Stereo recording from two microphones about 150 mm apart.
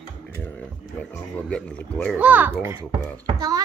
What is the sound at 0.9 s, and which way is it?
Speech, 5° left (ahead or behind).